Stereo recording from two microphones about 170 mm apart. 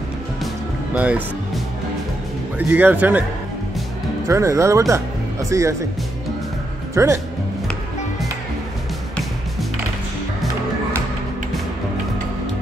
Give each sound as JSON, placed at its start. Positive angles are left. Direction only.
{"t": 0.9, "sound": "speech", "side_deg": -5}
{"t": 2.7, "sound": "speech", "side_deg": -10}
{"t": 4.3, "sound": "speech", "side_deg": -15}
{"t": 7.0, "sound": "speech", "side_deg": -20}